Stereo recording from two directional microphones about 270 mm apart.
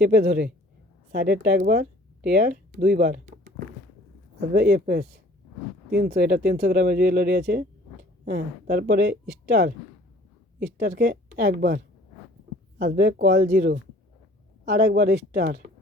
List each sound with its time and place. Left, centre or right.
0.2 s speech: right
10.8 s speech: right
12.8 s speech: right